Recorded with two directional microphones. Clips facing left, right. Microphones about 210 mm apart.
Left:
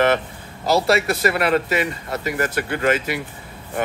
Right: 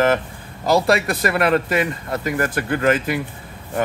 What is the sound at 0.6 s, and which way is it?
Speech, 50° right (ahead or behind).